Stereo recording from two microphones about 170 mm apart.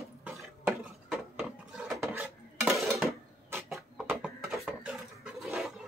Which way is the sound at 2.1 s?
5° right (ahead or behind).